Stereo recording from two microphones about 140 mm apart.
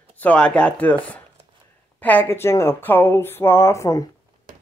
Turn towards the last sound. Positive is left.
turn(degrees=25)  # may be behind; listen again after turning